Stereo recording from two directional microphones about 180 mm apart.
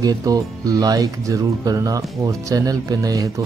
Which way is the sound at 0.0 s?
20° right (ahead or behind).